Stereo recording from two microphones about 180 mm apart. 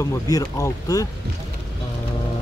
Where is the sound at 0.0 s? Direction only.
20° left (ahead or behind).